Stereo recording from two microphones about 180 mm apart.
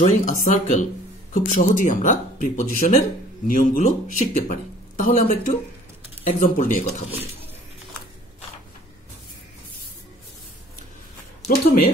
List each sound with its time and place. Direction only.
0.0 s speech: 45° left (ahead or behind)
11.4 s speech: 55° left (ahead or behind)